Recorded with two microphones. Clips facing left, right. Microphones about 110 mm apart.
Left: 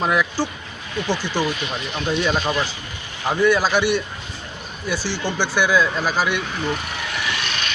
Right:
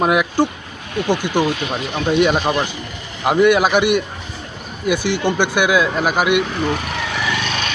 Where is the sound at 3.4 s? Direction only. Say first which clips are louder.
Right 4 dB; 60° right (ahead or behind).